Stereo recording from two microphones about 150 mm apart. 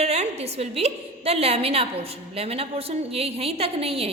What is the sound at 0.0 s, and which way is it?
A woman's voice, 45° right (ahead or behind).